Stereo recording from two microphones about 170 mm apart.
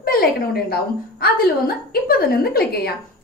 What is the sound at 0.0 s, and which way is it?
A woman's voice, 65° left (ahead or behind).